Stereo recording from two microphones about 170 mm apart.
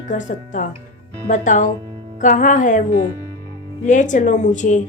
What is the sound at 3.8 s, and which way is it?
Speech, 45° left (ahead or behind).